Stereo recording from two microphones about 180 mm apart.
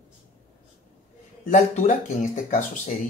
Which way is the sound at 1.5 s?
45° left (ahead or behind).